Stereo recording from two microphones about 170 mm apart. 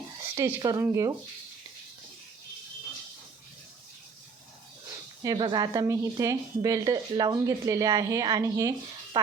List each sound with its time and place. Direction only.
0.3 s speech: 20° right (ahead or behind)
5.2 s a woman's voice: 25° right (ahead or behind)